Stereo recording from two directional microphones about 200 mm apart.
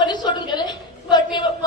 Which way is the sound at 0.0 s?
20° left (ahead or behind).